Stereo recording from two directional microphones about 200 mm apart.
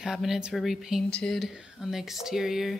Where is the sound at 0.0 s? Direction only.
Centre (ahead or behind).